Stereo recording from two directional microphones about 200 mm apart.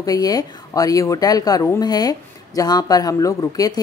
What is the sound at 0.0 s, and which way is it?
Speech, 20° left (ahead or behind).